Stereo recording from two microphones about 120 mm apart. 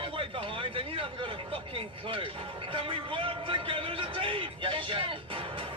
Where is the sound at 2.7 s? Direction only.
45° right (ahead or behind).